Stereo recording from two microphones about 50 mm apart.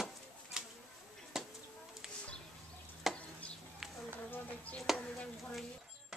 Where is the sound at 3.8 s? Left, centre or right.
Centre.